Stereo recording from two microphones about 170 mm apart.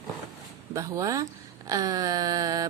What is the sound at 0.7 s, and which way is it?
Speech, 20° right (ahead or behind).